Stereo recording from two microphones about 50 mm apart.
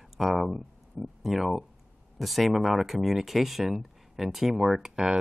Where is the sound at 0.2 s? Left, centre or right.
Centre.